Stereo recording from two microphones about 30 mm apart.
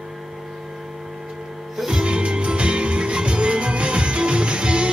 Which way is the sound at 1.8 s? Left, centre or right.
Right.